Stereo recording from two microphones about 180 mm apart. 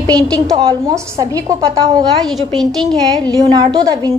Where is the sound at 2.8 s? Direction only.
25° right (ahead or behind).